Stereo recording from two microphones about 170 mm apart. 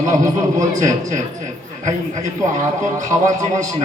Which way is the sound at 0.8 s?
45° right (ahead or behind).